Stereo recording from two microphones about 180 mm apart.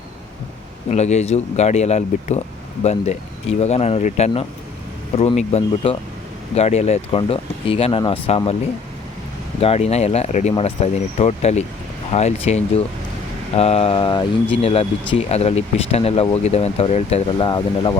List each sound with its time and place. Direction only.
0.9 s speech: 40° left (ahead or behind)
9.6 s speech: 35° left (ahead or behind)
13.6 s a sound: 35° left (ahead or behind)
14.6 s speech: 35° left (ahead or behind)